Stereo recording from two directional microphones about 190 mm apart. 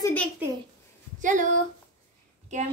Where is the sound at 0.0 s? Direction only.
10° left (ahead or behind).